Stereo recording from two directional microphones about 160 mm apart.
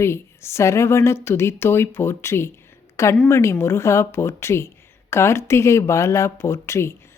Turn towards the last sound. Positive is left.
turn(degrees=15)  # may be behind; listen again after turning